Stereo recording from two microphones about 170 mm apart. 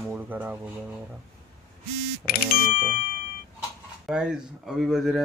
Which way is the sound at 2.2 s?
60° left (ahead or behind).